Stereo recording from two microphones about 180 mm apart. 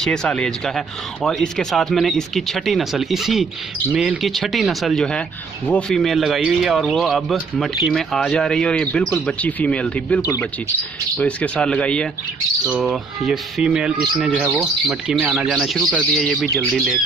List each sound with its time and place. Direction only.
0.0 s speech: 5° left (ahead or behind)
10.2 s speech: 15° left (ahead or behind); by 17.0 s centre (ahead or behind)